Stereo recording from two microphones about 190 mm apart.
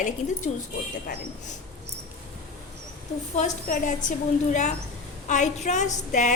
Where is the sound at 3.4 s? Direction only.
40° left (ahead or behind).